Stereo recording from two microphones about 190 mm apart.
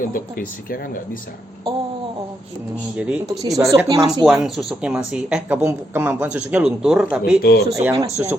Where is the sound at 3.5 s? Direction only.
15° right (ahead or behind).